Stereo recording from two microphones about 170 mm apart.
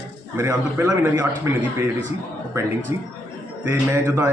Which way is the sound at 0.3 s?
15° right (ahead or behind).